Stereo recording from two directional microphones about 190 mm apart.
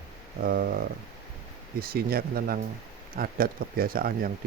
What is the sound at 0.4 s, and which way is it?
Speech, 50° right (ahead or behind).